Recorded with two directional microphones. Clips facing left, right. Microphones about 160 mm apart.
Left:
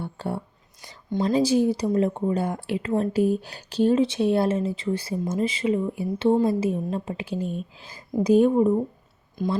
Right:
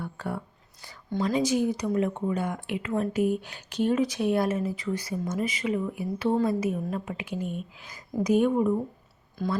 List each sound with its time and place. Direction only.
0.0 s a sound: 30° left (ahead or behind)
1.2 s speech: 30° left (ahead or behind)
9.4 s speech: 20° left (ahead or behind)